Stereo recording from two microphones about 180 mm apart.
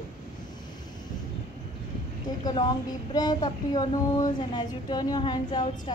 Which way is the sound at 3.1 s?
25° left (ahead or behind).